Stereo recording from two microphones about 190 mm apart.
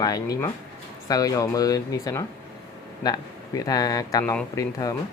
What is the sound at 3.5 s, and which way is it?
Speech, 20° left (ahead or behind).